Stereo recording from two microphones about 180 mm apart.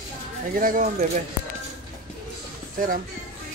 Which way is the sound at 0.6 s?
50° right (ahead or behind).